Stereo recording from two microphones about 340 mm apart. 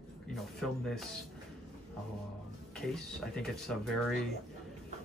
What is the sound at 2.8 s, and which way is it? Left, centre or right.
Speech, centre.